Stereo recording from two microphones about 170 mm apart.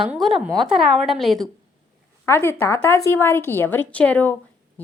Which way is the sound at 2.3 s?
15° left (ahead or behind).